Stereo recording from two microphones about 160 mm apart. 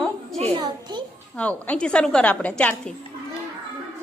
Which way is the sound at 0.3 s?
40° right (ahead or behind).